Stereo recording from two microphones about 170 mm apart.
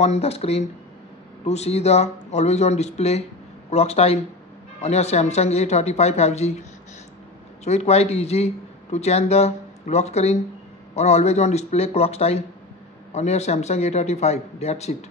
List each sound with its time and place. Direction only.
0.0 s speech: 40° left (ahead or behind)
7.6 s speech: 40° left (ahead or behind)